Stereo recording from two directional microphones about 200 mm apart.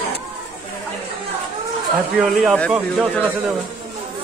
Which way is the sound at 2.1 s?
5° right (ahead or behind).